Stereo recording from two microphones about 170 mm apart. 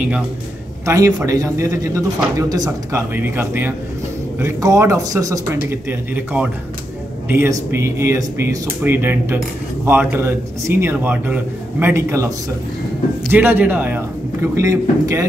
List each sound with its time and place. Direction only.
0.8 s a man's voice: 20° right (ahead or behind)
13.3 s a man's voice: 10° right (ahead or behind)